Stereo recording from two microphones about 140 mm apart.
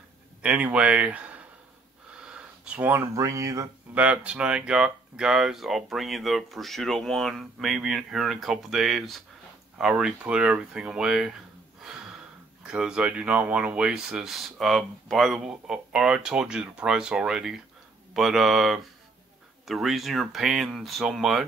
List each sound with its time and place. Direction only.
0.4 s speech: 10° right (ahead or behind)
3.9 s speech: 10° right (ahead or behind)